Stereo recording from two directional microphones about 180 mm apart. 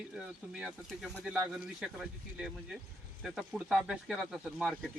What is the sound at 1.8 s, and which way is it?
Speech, 5° right (ahead or behind).